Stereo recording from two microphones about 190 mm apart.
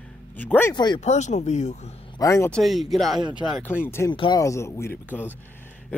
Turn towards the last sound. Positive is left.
turn(degrees=10)  # may be behind; listen again after turning